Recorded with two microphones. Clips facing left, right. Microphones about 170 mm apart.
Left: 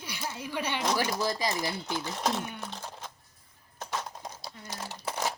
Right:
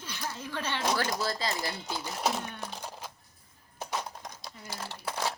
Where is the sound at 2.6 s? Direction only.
5° right (ahead or behind).